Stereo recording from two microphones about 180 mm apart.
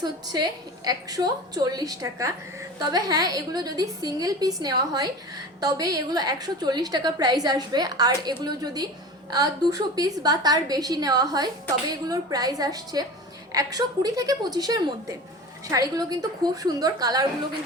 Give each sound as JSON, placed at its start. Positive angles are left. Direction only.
{"t": 0.9, "sound": "a woman's voice", "side_deg": -20}